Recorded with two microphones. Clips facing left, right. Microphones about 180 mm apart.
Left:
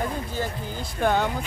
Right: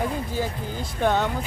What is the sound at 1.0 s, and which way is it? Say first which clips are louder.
Speech: even; 5° left (ahead or behind).